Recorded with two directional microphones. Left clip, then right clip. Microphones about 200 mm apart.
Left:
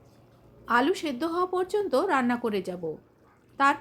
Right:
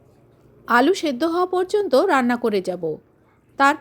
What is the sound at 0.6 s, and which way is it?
Speech, 35° right (ahead or behind).